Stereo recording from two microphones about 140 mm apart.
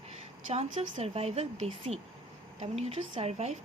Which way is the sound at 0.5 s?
45° right (ahead or behind).